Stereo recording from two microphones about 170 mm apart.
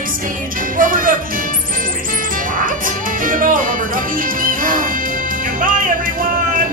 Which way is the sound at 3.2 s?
55° right (ahead or behind).